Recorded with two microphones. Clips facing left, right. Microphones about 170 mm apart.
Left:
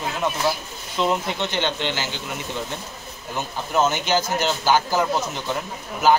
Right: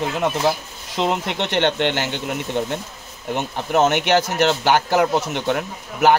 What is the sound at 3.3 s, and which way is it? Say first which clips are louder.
Speech: right 3 dB; 70° right (ahead or behind).